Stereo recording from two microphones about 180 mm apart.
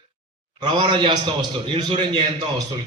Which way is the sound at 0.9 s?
25° right (ahead or behind).